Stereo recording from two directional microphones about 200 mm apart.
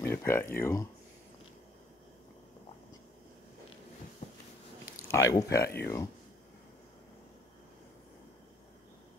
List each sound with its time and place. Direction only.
0.0 s speech: 10° left (ahead or behind)
4.2 s a sound: 35° left (ahead or behind)
4.9 s speech: 15° left (ahead or behind)